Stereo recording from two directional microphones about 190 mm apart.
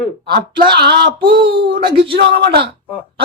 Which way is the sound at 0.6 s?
60° right (ahead or behind).